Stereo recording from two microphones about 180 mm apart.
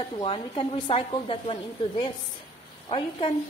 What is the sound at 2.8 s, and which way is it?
Speech, 30° left (ahead or behind).